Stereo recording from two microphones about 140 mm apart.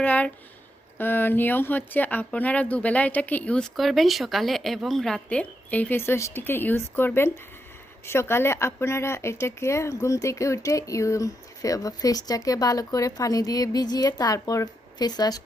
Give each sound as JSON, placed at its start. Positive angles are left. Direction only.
{"t": 0.0, "sound": "speech", "side_deg": 10}